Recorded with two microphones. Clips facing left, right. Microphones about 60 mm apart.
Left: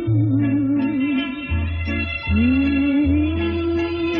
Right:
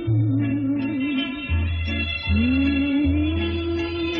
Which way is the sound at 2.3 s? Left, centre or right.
Centre.